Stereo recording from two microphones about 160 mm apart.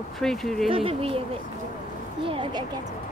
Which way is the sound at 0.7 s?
35° right (ahead or behind).